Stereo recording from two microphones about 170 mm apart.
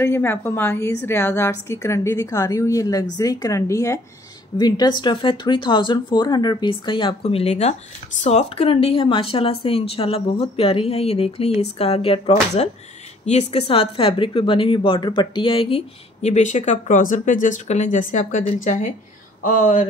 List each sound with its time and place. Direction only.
0.0 s a woman's voice: 15° left (ahead or behind); by 19.9 s 45° left (ahead or behind)